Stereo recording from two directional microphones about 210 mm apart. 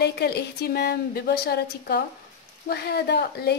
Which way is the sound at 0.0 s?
50° left (ahead or behind).